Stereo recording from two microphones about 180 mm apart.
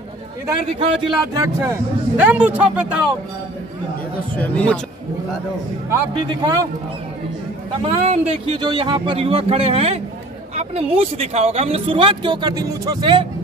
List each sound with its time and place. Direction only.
0.7 s speech: 30° right (ahead or behind)
1.6 s speech: 15° right (ahead or behind)
4.4 s a man's voice: 10° left (ahead or behind)
6.1 s speech: 20° right (ahead or behind)
7.8 s speech: 35° right (ahead or behind)